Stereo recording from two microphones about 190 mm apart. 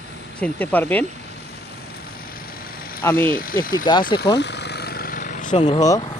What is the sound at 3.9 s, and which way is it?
Speech, 25° left (ahead or behind).